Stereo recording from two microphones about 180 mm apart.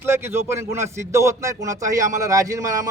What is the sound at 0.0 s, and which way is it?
A man's voice, 15° right (ahead or behind).